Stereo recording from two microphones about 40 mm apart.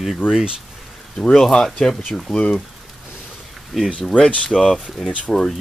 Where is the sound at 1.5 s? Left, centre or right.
Centre.